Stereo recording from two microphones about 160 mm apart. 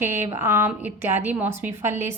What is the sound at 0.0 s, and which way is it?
A woman's voice, 15° right (ahead or behind).